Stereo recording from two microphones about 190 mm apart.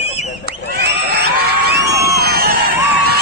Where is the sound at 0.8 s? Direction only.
60° right (ahead or behind).